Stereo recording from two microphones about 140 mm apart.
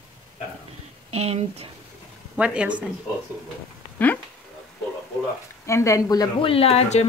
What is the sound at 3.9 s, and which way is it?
Speech, 10° left (ahead or behind).